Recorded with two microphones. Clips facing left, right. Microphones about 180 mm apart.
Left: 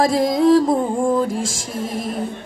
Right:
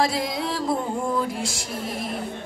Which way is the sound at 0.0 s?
45° left (ahead or behind).